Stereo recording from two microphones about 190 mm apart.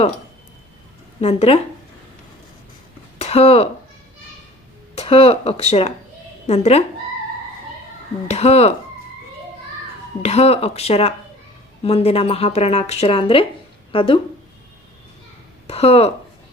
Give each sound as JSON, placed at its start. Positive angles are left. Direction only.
{"t": 1.2, "sound": "a woman's voice", "side_deg": 35}
{"t": 3.2, "sound": "speech", "side_deg": 35}
{"t": 4.9, "sound": "a woman's voice", "side_deg": 30}
{"t": 8.3, "sound": "a woman's voice", "side_deg": 35}
{"t": 10.2, "sound": "a woman's voice", "side_deg": 35}
{"t": 15.6, "sound": "speech", "side_deg": 30}